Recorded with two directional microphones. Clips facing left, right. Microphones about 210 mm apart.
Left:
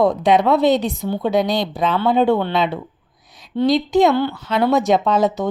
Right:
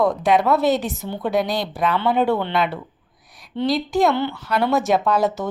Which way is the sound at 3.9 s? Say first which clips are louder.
Left 4 dB; 20° left (ahead or behind).